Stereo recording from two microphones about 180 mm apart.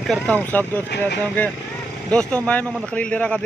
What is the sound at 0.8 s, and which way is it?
Speech, 70° left (ahead or behind).